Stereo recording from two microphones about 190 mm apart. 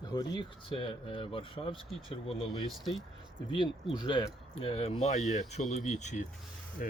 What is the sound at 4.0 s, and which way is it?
Speech, 25° left (ahead or behind).